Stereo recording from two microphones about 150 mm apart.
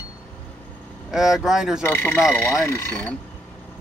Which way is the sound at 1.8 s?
15° left (ahead or behind).